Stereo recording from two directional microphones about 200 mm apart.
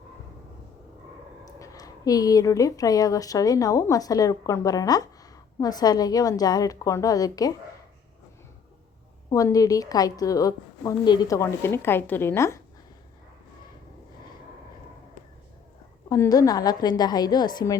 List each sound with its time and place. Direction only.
1.5 s speech: 15° left (ahead or behind)
9.3 s speech: 15° left (ahead or behind)
16.0 s a woman's voice: 15° left (ahead or behind)